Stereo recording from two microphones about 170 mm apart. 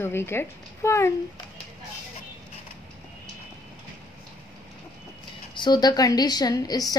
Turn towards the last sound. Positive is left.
turn(degrees=20)  # may be behind; listen again after turning